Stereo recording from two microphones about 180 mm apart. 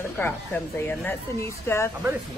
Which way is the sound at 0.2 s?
10° left (ahead or behind).